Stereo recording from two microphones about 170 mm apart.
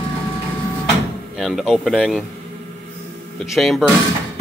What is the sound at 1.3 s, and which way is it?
Speech, centre (ahead or behind).